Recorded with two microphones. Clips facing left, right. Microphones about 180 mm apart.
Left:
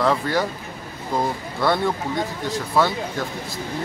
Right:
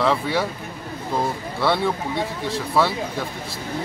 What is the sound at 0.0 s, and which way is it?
Speech, centre (ahead or behind).